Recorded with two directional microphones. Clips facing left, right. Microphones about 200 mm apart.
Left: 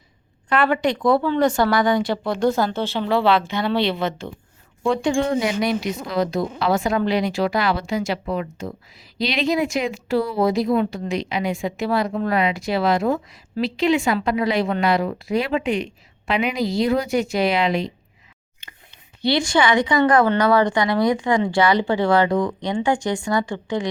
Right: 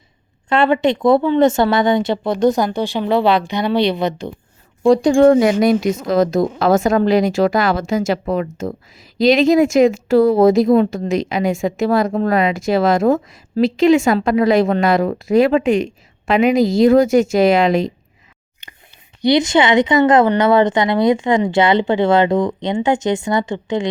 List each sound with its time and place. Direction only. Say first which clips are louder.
0.4 s a woman's voice: right 5 dB; 25° right (ahead or behind)
4.8 s speech: right 9 dB; 40° right (ahead or behind)
18.6 s whispering: right 2 dB; 20° right (ahead or behind)
19.2 s a woman's voice: right 5 dB; 20° right (ahead or behind)